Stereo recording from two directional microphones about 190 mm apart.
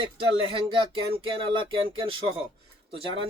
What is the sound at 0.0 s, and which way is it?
Speech, 25° right (ahead or behind).